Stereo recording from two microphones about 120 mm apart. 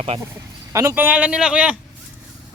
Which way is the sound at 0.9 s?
15° right (ahead or behind).